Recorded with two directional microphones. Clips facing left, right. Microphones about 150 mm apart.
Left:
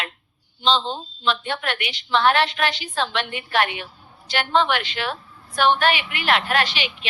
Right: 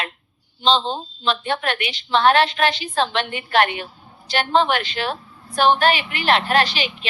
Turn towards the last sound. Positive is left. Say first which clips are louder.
# right 3 dB
turn(degrees=-35)  # may be behind; listen again after turning